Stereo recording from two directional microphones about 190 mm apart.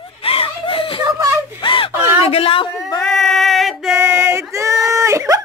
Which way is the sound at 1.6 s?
25° left (ahead or behind).